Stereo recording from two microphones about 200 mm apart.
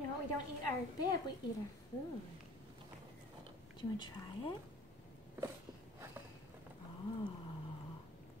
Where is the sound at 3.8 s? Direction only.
20° left (ahead or behind).